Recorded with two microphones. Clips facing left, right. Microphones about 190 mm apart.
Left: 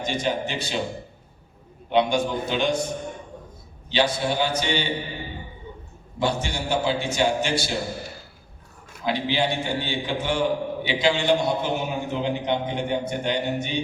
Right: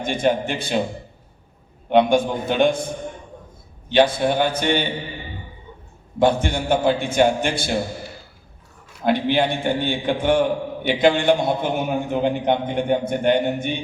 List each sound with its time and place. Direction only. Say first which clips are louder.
0.0 s a man's voice: right 5 dB; 55° right (ahead or behind)
1.9 s a man's voice: right 5 dB; 55° right (ahead or behind)
3.8 s a man's voice: right 6 dB; 55° right (ahead or behind)
6.1 s a man's voice: right 7 dB; 55° right (ahead or behind)
9.0 s a man's voice: right 5 dB; 55° right (ahead or behind)